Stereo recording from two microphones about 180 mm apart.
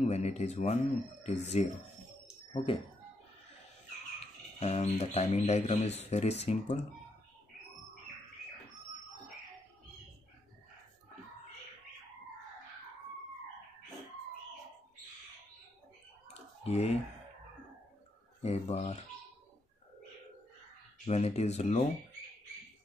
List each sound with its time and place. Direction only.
0.0 s speech: 35° left (ahead or behind)
4.6 s speech: 35° left (ahead or behind)
16.6 s speech: 35° left (ahead or behind)
18.4 s speech: 35° left (ahead or behind)
21.0 s speech: 35° left (ahead or behind)